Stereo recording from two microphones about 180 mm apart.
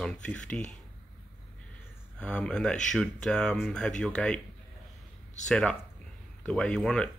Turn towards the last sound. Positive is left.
turn(degrees=5)  # may be behind; listen again after turning